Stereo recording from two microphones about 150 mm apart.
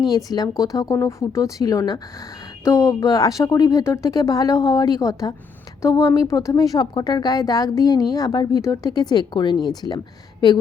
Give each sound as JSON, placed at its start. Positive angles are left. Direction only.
{"t": 0.3, "sound": "speech", "side_deg": 25}